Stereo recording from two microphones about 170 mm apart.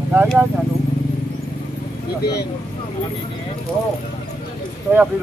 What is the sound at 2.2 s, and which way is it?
Speech, 70° left (ahead or behind).